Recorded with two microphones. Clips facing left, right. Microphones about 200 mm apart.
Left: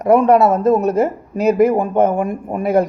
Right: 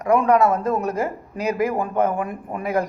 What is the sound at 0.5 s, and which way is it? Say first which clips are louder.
A man's voice: left 8 dB; 25° left (ahead or behind).